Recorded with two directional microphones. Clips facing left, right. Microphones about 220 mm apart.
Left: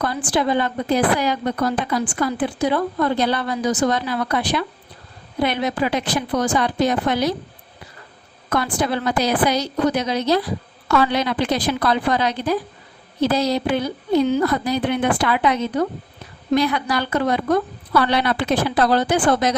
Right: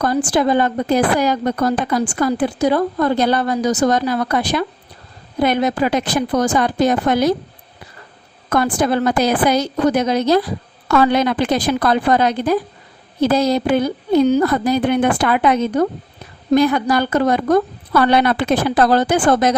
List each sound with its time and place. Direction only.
0.0 s speech: 45° right (ahead or behind)
8.4 s speech: 45° right (ahead or behind)